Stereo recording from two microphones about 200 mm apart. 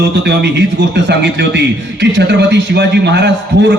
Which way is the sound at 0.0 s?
55° right (ahead or behind).